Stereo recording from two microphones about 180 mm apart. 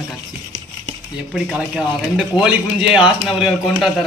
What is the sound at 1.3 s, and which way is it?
A man's voice, 5° right (ahead or behind).